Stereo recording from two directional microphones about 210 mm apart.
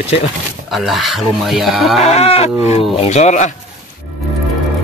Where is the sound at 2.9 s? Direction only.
30° left (ahead or behind).